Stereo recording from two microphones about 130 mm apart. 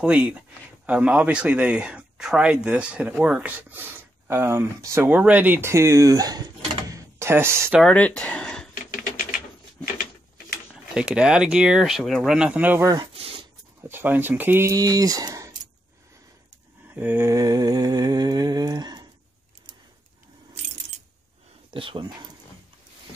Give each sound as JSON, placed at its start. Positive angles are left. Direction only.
{"t": 0.0, "sound": "speech", "side_deg": -10}
{"t": 7.8, "sound": "speech", "side_deg": 10}
{"t": 10.7, "sound": "speech", "side_deg": -5}
{"t": 12.9, "sound": "a sound", "side_deg": -45}
{"t": 13.7, "sound": "speech", "side_deg": -15}
{"t": 16.9, "sound": "mantra", "side_deg": -15}
{"t": 21.6, "sound": "speech", "side_deg": -40}